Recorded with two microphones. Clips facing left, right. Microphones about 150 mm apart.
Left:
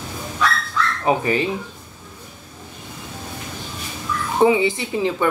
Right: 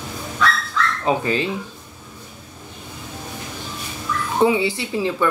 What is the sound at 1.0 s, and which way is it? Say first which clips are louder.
Speech: left 2 dB; 15° left (ahead or behind).